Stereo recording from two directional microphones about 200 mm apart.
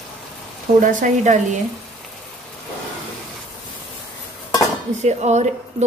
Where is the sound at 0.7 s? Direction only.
40° right (ahead or behind).